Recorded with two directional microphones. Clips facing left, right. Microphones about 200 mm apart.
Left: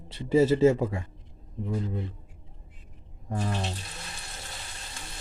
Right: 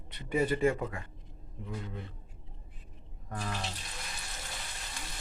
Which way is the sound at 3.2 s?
25° left (ahead or behind).